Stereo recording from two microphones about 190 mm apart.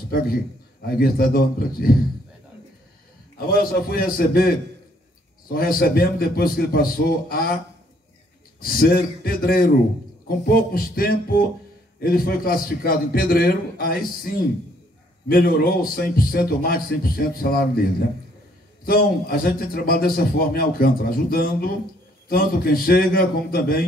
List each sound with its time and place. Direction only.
0.8 s a man's voice: 50° left (ahead or behind)
3.9 s a man's voice: 50° left (ahead or behind)
18.9 s a man's voice: 50° left (ahead or behind)